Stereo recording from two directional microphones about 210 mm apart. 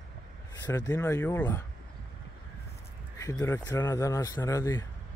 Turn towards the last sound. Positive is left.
turn(degrees=15)  # may be behind; listen again after turning